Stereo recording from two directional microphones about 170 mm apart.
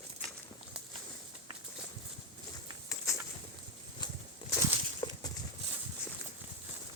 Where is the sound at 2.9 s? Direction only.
20° left (ahead or behind).